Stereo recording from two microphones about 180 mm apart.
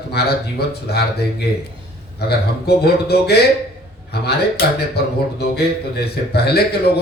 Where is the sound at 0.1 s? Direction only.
65° left (ahead or behind).